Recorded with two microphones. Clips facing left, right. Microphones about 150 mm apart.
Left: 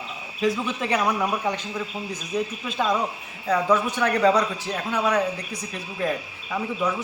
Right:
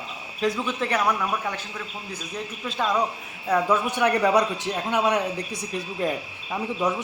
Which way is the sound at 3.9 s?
15° right (ahead or behind).